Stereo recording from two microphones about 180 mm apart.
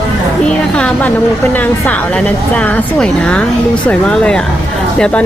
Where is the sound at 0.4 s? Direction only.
5° left (ahead or behind).